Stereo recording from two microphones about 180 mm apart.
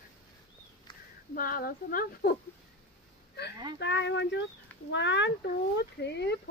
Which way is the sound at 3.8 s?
75° left (ahead or behind).